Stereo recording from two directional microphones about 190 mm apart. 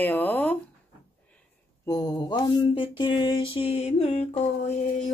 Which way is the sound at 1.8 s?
20° left (ahead or behind).